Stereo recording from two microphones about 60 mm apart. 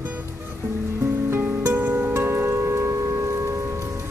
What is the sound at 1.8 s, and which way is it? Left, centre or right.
Music, right.